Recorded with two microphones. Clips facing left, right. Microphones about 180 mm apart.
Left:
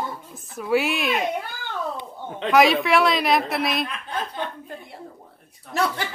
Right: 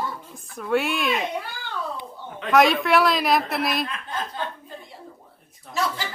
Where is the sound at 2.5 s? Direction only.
Centre (ahead or behind).